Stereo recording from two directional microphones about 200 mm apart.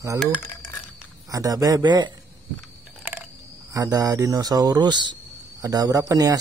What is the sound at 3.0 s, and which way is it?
Speech, 10° right (ahead or behind).